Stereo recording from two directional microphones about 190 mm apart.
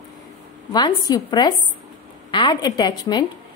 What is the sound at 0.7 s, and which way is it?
A woman's voice, 20° left (ahead or behind).